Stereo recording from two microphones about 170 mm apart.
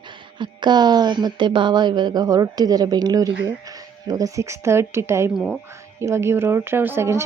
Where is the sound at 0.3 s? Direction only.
25° right (ahead or behind).